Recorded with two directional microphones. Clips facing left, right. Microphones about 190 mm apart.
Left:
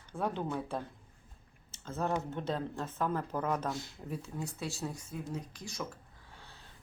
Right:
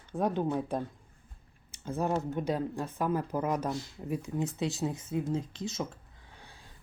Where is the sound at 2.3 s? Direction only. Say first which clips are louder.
Right 4 dB; 10° right (ahead or behind).